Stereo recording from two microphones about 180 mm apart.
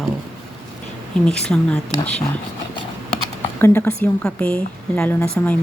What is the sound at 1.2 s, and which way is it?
Speech, 5° left (ahead or behind).